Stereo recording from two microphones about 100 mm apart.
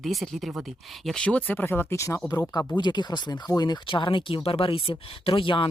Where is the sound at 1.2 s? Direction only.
15° left (ahead or behind).